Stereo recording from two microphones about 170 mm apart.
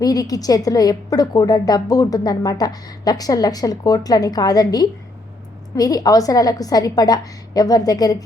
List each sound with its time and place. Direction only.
0.0 s a woman's voice: 20° left (ahead or behind)